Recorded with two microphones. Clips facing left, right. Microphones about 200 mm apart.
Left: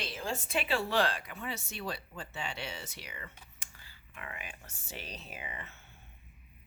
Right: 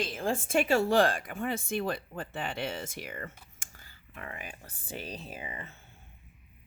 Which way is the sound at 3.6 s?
45° right (ahead or behind).